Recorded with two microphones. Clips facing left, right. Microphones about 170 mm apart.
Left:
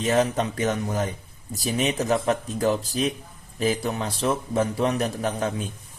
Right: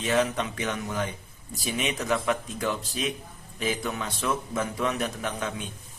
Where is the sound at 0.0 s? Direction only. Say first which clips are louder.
Left 3 dB; 40° left (ahead or behind).